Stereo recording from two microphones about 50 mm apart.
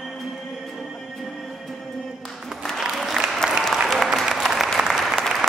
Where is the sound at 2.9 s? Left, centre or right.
Centre.